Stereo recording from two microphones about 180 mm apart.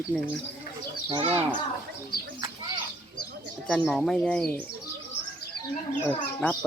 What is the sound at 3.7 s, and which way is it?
Speech, 5° left (ahead or behind).